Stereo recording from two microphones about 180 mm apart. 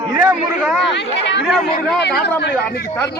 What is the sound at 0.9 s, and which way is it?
Speech, 75° left (ahead or behind).